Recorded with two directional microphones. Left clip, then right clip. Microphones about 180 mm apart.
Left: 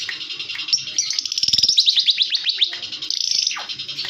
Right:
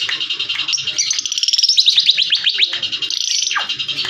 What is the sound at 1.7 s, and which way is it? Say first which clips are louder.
Bird: right 5 dB; 15° left (ahead or behind).